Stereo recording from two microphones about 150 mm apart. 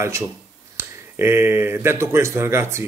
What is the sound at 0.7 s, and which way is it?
Speech, 15° right (ahead or behind).